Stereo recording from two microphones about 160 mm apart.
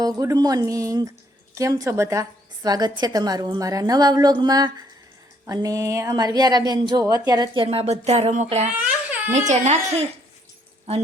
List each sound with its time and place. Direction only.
0.0 s speech: 20° right (ahead or behind); by 8.6 s 45° right (ahead or behind)
8.8 s baby cry: 10° right (ahead or behind)
9.3 s speech: 45° right (ahead or behind)